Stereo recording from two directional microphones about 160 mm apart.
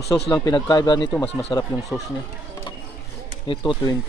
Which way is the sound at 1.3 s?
40° left (ahead or behind).